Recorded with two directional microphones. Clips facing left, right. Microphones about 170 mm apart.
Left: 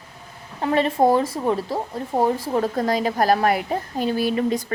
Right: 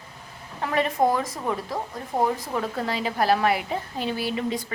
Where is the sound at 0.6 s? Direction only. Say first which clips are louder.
Left 4 dB; 30° left (ahead or behind).